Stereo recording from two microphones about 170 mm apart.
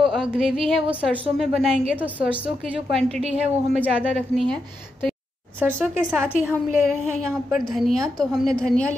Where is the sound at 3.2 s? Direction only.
40° right (ahead or behind).